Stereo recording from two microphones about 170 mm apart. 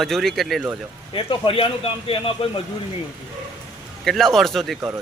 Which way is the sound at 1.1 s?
30° left (ahead or behind).